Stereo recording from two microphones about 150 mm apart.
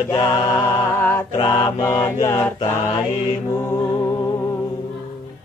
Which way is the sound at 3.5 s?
20° left (ahead or behind).